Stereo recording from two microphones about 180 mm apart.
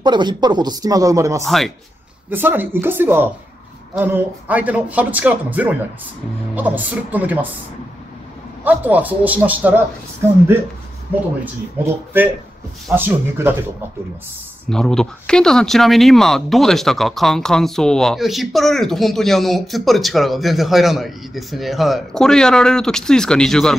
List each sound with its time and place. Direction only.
0.0 s speech: 25° right (ahead or behind)
1.4 s speech: centre (ahead or behind)
2.3 s speech: 10° right (ahead or behind)
8.6 s speech: 10° right (ahead or behind)
12.9 s speech: 10° right (ahead or behind)
14.7 s speech: 5° left (ahead or behind)